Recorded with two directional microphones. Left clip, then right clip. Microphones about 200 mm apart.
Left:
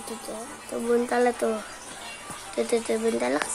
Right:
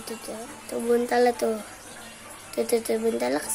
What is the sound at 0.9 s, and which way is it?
Speech, 20° right (ahead or behind).